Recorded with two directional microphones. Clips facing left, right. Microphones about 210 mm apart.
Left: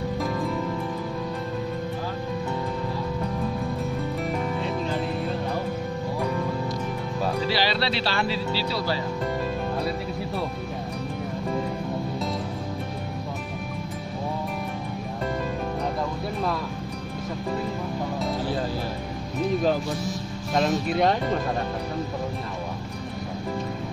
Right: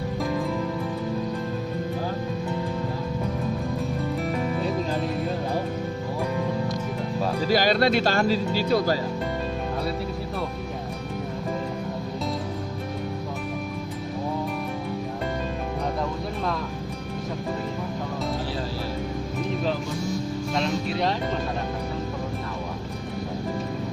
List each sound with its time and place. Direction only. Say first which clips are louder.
7.4 s speech: right 8 dB; 45° right (ahead or behind)
20.5 s music: left 5 dB; 50° left (ahead or behind)